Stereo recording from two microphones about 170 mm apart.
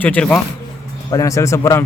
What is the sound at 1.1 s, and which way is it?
Speech, 20° left (ahead or behind).